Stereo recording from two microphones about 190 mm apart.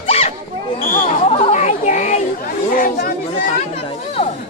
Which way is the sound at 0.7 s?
45° left (ahead or behind).